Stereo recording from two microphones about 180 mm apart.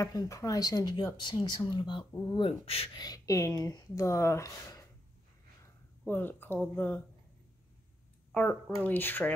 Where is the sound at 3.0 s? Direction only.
20° left (ahead or behind).